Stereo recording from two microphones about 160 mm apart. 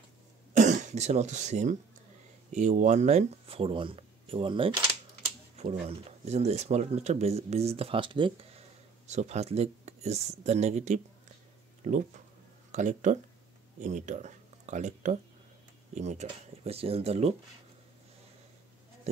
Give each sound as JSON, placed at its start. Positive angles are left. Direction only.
{"t": 0.6, "sound": "speech", "side_deg": -50}